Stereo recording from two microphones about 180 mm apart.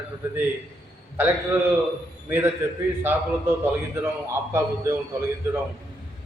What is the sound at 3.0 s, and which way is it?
A man's voice, 10° right (ahead or behind).